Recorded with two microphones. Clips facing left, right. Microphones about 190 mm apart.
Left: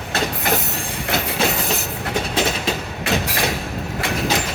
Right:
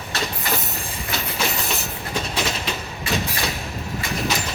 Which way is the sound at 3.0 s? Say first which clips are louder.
Left 4 dB; 65° left (ahead or behind).